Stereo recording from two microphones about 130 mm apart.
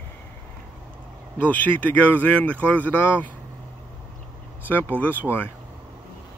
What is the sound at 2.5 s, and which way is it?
Speech, 10° left (ahead or behind).